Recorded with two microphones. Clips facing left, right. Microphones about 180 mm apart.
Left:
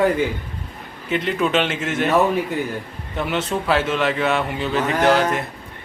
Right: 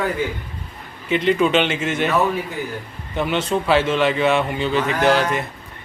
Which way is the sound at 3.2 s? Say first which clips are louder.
Right 2 dB; centre (ahead or behind).